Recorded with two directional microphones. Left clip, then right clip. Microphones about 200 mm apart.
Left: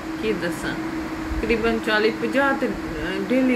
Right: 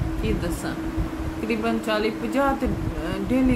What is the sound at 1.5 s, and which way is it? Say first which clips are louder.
Speech: left 4 dB; 20° right (ahead or behind).